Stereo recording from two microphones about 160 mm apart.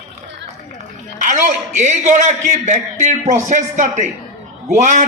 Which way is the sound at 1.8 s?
45° right (ahead or behind).